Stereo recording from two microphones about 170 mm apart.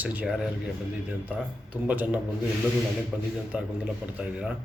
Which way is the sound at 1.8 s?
10° right (ahead or behind).